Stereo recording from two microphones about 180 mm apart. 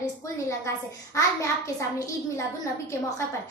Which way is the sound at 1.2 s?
15° left (ahead or behind).